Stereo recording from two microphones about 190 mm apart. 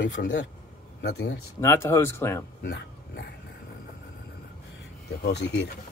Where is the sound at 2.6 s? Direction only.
60° left (ahead or behind).